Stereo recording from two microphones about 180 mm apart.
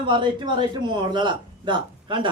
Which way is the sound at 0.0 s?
25° right (ahead or behind).